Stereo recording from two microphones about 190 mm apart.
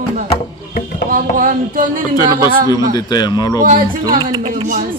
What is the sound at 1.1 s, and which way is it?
Speech, 45° right (ahead or behind).